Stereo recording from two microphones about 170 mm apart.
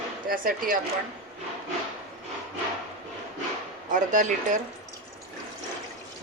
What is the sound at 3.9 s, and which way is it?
Speech, 50° right (ahead or behind).